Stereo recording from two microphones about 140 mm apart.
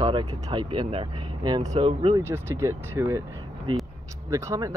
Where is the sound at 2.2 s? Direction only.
15° right (ahead or behind).